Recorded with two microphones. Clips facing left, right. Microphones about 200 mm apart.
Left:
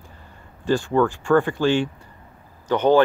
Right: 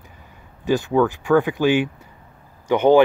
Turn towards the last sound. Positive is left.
turn(degrees=-10)  # may be behind; listen again after turning